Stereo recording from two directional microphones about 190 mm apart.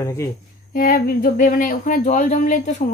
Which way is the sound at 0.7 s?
50° left (ahead or behind).